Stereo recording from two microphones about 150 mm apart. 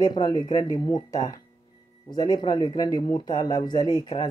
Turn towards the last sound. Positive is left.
turn(degrees=30)  # may be behind; listen again after turning